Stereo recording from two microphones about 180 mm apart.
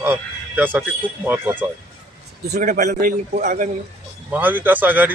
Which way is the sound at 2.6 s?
45° right (ahead or behind).